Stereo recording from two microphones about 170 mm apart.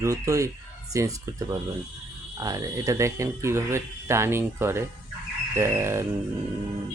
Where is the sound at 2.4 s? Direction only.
20° right (ahead or behind).